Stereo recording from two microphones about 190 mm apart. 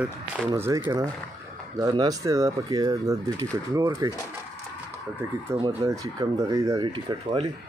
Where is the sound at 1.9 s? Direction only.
20° right (ahead or behind).